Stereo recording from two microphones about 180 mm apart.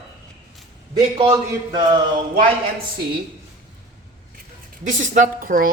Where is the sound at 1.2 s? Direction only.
20° right (ahead or behind).